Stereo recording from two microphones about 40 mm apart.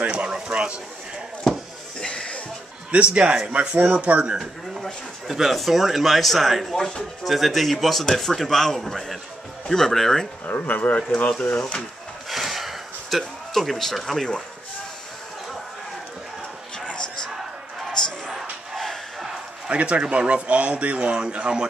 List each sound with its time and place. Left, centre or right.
0.1 s a sound: right
1.5 s a sound: centre
2.0 s music: left
2.9 s a man's voice: right
3.7 s speech: right
5.3 s a man's voice: centre
6.7 s speech: centre
7.2 s a man's voice: centre
10.4 s speech: left
12.3 s gasp: centre
13.5 s speech: centre
16.8 s a sound: left
18.8 s battle cry: centre
19.7 s a man's voice: right